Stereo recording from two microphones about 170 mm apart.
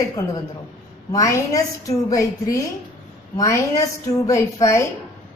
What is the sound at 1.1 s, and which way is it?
A woman's voice, 20° left (ahead or behind).